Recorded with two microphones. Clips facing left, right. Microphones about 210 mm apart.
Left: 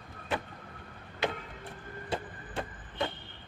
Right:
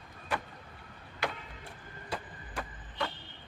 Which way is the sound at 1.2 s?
20° left (ahead or behind).